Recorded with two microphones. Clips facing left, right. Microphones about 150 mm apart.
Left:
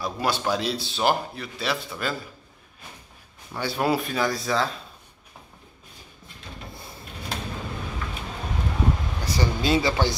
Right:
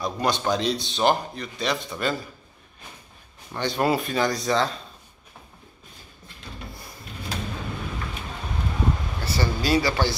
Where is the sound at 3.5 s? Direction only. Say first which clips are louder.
Right 1 dB; 5° left (ahead or behind).